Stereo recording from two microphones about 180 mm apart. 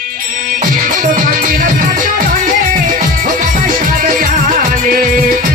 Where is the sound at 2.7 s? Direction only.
45° right (ahead or behind).